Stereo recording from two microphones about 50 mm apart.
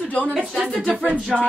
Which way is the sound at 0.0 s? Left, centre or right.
Left.